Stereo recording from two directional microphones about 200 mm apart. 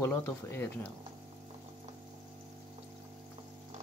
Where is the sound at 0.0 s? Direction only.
10° left (ahead or behind).